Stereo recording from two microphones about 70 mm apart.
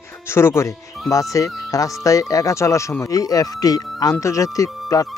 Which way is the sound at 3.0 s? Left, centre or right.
Left.